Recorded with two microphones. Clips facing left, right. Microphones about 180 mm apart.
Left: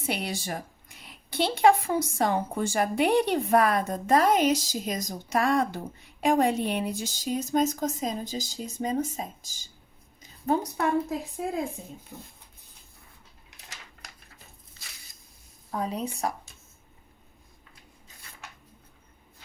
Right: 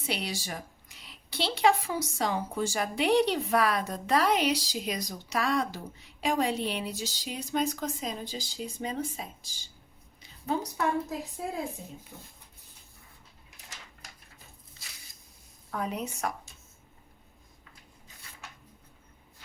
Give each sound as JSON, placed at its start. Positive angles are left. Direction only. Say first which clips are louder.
{"t": 0.0, "sound": "a woman's voice", "louder": "left 3 dB", "side_deg": 50}
{"t": 10.2, "sound": "a sound", "louder": "left 5 dB", "side_deg": 45}
{"t": 15.7, "sound": "a woman's voice", "louder": "left 3 dB", "side_deg": 30}